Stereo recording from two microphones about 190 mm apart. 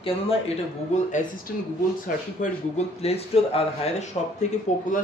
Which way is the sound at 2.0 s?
40° left (ahead or behind).